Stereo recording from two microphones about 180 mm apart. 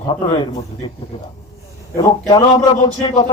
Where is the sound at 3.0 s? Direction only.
35° left (ahead or behind).